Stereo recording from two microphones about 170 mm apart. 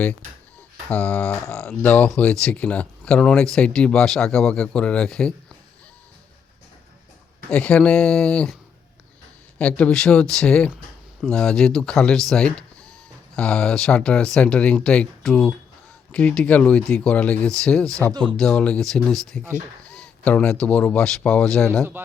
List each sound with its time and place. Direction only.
0.9 s speech: 10° left (ahead or behind)
7.5 s speech: 10° left (ahead or behind)
9.6 s speech: 10° left (ahead or behind)
18.1 s speech: 30° right (ahead or behind)
18.3 s speech: 5° left (ahead or behind)